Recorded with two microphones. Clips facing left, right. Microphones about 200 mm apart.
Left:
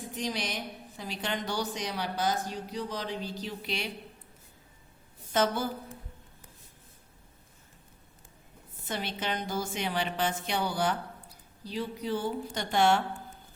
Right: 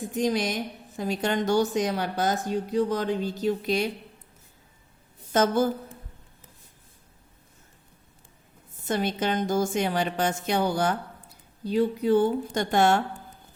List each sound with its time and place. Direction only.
0.1 s speech: 45° right (ahead or behind)
5.3 s speech: 45° right (ahead or behind)
8.9 s speech: 45° right (ahead or behind)